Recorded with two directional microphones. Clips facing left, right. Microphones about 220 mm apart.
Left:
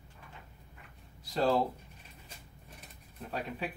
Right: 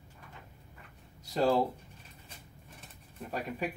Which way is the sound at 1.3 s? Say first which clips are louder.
Right 1 dB; 10° right (ahead or behind).